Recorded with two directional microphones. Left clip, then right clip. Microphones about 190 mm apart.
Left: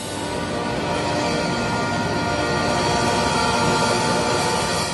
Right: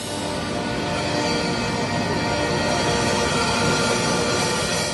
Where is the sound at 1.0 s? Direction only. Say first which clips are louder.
Right 1 dB; 30° left (ahead or behind).